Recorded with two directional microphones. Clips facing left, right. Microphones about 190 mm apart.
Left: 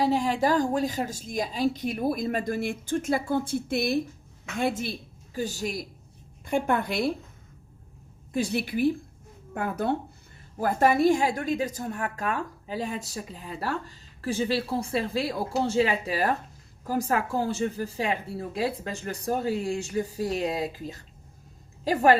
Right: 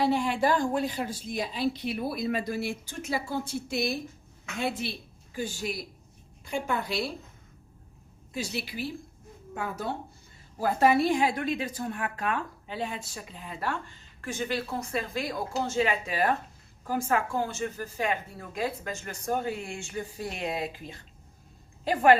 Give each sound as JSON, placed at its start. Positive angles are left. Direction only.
{"t": 0.0, "sound": "a woman's voice", "side_deg": 40}
{"t": 6.4, "sound": "a woman's voice", "side_deg": 55}
{"t": 8.3, "sound": "a woman's voice", "side_deg": 55}